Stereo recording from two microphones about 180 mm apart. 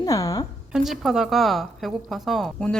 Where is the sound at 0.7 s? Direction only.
Centre (ahead or behind).